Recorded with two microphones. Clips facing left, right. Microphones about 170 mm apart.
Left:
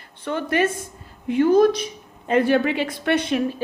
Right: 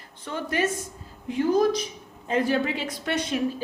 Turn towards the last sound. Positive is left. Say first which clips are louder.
# left 5 dB
turn(degrees=60)  # may be behind; listen again after turning